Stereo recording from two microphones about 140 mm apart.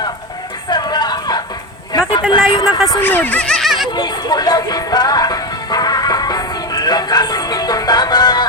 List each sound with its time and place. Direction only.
0.7 s a sound: 30° left (ahead or behind)
2.3 s speech: 30° left (ahead or behind)
3.0 s speech: 15° left (ahead or behind)
3.9 s music: 30° left (ahead or behind)